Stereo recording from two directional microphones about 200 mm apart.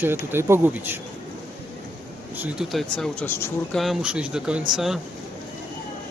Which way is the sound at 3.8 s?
Centre (ahead or behind).